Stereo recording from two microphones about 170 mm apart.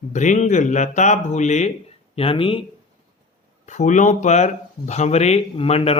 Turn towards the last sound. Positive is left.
turn(degrees=35)  # may be behind; listen again after turning